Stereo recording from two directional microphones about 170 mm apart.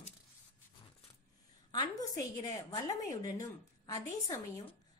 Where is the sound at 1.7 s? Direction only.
20° left (ahead or behind).